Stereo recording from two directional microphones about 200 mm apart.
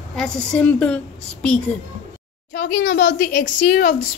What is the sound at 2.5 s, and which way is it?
A child's voice, 55° left (ahead or behind).